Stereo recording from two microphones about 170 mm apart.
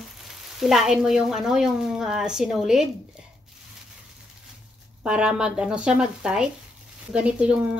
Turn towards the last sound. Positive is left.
turn(degrees=-5)  # may be behind; listen again after turning